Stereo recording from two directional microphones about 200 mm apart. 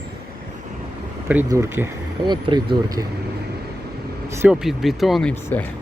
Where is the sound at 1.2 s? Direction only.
10° right (ahead or behind).